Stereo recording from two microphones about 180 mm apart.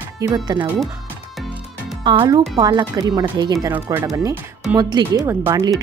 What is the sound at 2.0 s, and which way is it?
Speech, 25° right (ahead or behind).